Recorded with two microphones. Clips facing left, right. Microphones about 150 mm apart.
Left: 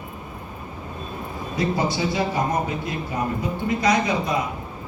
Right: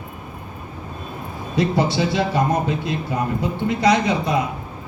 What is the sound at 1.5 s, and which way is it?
Speech, 70° right (ahead or behind).